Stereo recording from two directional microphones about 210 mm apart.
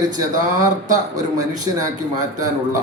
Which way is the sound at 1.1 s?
15° right (ahead or behind).